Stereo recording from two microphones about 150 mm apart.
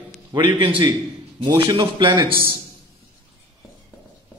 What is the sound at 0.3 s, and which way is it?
A man's voice, 35° right (ahead or behind).